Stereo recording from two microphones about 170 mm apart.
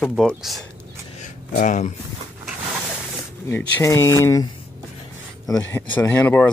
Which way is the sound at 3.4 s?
15° left (ahead or behind).